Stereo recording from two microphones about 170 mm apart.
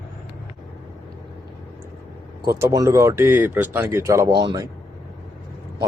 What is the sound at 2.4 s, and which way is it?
Speech, 20° right (ahead or behind).